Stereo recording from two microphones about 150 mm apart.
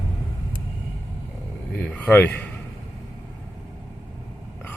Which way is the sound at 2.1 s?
10° left (ahead or behind).